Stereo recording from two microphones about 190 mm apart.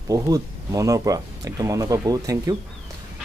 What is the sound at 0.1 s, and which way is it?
Speech, 20° right (ahead or behind).